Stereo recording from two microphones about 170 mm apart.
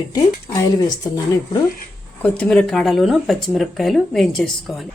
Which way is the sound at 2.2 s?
5° left (ahead or behind).